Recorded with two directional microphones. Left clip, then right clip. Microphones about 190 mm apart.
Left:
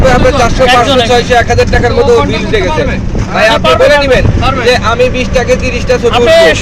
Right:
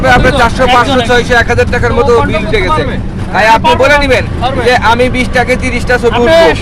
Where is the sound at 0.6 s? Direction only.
10° right (ahead or behind).